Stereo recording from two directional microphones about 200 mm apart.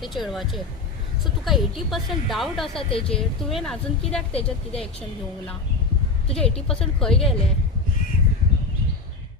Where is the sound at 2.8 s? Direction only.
25° left (ahead or behind).